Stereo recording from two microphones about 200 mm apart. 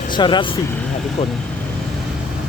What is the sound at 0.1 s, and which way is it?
Speech, 25° left (ahead or behind).